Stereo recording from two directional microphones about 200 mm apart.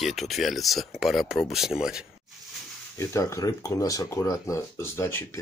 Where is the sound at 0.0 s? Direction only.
Centre (ahead or behind).